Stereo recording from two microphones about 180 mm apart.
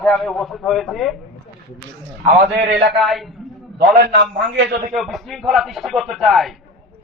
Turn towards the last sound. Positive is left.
turn(degrees=0)  # may be behind; listen again after turning